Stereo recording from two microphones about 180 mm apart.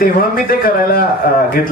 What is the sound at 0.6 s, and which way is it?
Speech, 55° left (ahead or behind).